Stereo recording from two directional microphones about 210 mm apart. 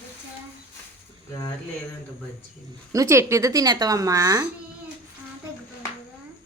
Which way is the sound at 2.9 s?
15° right (ahead or behind).